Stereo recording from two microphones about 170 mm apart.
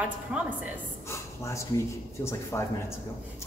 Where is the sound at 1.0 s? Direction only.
15° left (ahead or behind).